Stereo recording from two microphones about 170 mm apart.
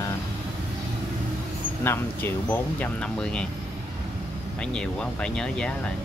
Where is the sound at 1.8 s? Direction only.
15° left (ahead or behind).